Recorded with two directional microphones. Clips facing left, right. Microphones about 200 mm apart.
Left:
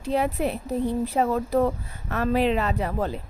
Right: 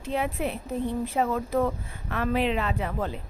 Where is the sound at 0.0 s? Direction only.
40° left (ahead or behind).